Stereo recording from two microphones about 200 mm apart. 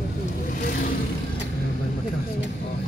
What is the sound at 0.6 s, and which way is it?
Vehicle, 45° left (ahead or behind).